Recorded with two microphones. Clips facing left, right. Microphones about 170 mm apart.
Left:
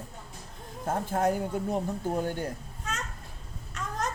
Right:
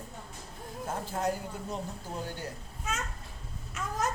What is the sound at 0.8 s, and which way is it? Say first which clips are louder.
Speech: left 5 dB; 50° left (ahead or behind).